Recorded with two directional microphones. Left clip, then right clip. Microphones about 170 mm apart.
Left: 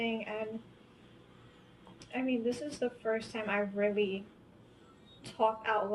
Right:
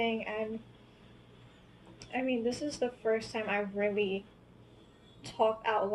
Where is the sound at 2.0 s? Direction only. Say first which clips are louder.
Right 1 dB; 30° right (ahead or behind).